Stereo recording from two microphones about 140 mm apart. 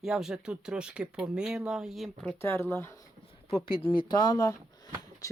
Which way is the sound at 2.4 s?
15° left (ahead or behind).